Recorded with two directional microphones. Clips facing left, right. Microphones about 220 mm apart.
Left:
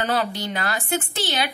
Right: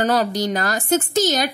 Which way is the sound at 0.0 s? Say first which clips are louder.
Right 5 dB; 40° right (ahead or behind).